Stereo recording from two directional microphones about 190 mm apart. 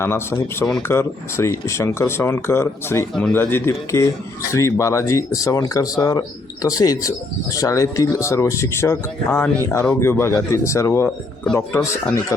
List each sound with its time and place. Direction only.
0.0 s speech: 15° left (ahead or behind)